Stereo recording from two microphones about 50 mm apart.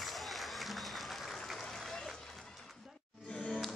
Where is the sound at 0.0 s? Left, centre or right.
Centre.